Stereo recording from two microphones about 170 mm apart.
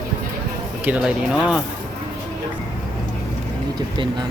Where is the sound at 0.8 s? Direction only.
5° right (ahead or behind).